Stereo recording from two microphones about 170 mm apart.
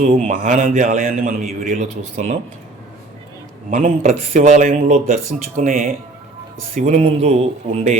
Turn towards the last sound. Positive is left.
turn(degrees=-35)  # may be behind; listen again after turning